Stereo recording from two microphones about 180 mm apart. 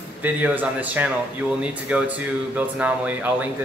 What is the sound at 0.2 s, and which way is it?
Speech, 10° right (ahead or behind).